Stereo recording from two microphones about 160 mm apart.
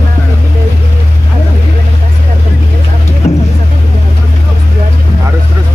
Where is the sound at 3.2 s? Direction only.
40° left (ahead or behind).